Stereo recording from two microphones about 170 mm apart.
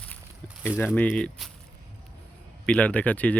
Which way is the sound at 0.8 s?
10° left (ahead or behind).